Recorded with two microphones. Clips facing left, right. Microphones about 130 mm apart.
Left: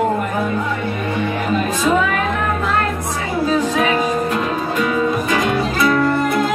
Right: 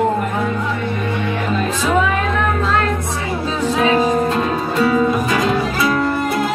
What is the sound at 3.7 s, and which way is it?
Music, 30° right (ahead or behind).